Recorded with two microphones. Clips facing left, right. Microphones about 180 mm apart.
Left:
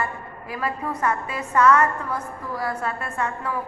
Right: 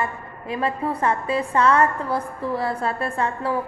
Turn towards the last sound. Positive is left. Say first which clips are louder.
# right 4 dB
turn(degrees=-30)  # may be behind; listen again after turning